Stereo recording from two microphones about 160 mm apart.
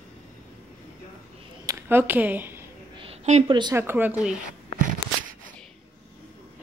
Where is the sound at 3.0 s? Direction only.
40° right (ahead or behind).